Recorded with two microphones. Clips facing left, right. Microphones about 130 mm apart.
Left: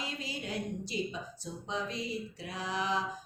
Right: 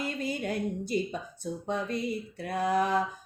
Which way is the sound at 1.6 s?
55° right (ahead or behind).